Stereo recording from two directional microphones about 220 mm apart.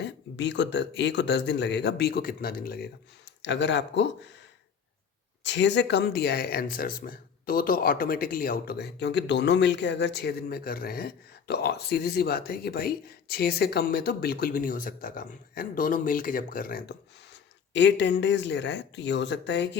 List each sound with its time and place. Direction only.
0.0 s speech: 55° left (ahead or behind)
5.4 s speech: 55° left (ahead or behind)
17.7 s speech: 55° left (ahead or behind)